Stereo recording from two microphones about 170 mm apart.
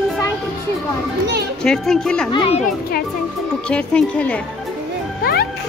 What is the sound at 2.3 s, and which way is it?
Speech, 30° left (ahead or behind).